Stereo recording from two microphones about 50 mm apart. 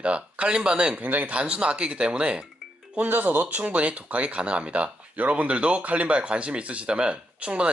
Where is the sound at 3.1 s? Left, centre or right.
Right.